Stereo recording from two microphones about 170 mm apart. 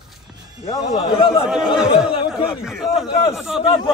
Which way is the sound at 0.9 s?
25° left (ahead or behind).